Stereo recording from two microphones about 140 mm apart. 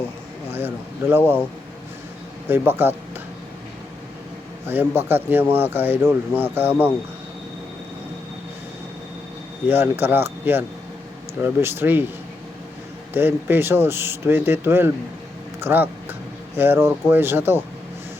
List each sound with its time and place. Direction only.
0.5 s a sound: 15° right (ahead or behind)
2.5 s speech: 15° right (ahead or behind)
4.6 s speech: 15° right (ahead or behind)
9.6 s speech: 15° right (ahead or behind)
13.1 s speech: 15° right (ahead or behind)
15.6 s a sound: 15° right (ahead or behind)
16.6 s speech: 15° right (ahead or behind)